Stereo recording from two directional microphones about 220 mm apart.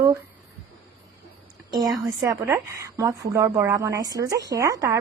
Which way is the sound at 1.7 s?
15° right (ahead or behind).